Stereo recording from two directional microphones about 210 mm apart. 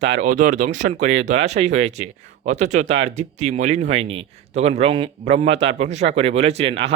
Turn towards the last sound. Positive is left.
turn(degrees=-30)  # may be behind; listen again after turning